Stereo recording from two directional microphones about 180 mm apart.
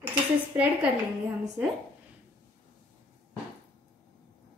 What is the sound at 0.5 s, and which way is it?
Speech, 15° right (ahead or behind).